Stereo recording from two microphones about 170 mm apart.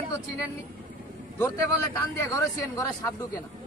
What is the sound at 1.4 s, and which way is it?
A man's voice, 15° left (ahead or behind).